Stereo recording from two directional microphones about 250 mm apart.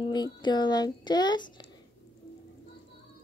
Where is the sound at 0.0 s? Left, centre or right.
Centre.